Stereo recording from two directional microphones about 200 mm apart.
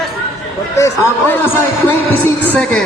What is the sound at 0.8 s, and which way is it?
A man's voice, 10° left (ahead or behind).